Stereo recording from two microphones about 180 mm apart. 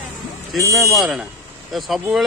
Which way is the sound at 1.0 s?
Centre (ahead or behind).